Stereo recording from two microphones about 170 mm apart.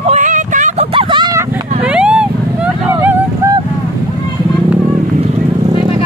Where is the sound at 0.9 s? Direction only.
30° right (ahead or behind).